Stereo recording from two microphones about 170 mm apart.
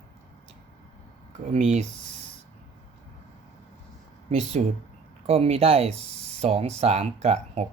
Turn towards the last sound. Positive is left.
turn(degrees=-40)  # may be behind; listen again after turning